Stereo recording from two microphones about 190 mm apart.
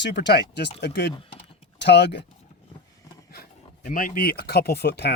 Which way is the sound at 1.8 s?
65° left (ahead or behind).